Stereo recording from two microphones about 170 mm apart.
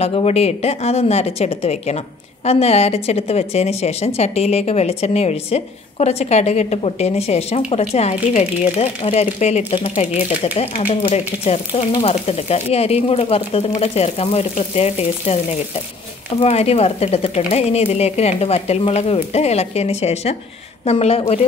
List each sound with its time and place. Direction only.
0.0 s a woman's voice: 35° left (ahead or behind)